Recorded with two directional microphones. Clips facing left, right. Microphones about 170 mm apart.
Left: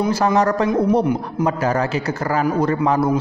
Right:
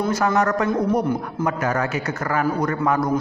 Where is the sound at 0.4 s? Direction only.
30° left (ahead or behind).